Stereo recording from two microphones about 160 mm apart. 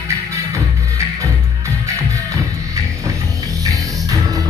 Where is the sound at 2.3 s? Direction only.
20° right (ahead or behind).